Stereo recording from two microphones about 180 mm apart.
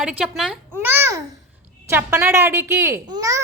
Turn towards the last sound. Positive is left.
turn(degrees=-20)  # may be behind; listen again after turning